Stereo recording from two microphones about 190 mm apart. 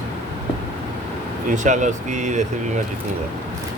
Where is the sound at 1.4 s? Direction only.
40° right (ahead or behind).